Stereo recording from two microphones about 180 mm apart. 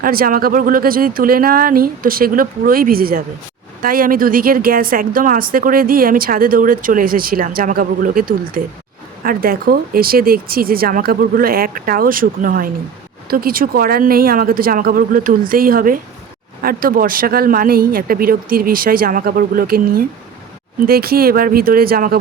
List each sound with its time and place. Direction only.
0.0 s a woman's voice: 55° right (ahead or behind)